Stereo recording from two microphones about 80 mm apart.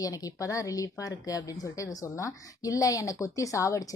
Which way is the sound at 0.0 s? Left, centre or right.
Left.